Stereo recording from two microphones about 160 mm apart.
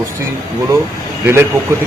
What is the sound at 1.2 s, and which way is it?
Speech, 15° right (ahead or behind).